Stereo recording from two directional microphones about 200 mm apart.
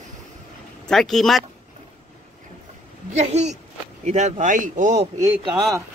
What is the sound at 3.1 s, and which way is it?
Speech, 35° right (ahead or behind).